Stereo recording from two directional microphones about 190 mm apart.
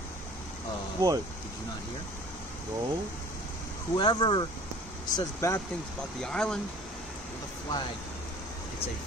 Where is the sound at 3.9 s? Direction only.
20° left (ahead or behind).